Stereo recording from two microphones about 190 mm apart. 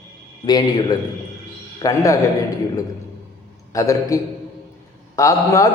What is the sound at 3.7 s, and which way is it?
A man's voice, 15° left (ahead or behind).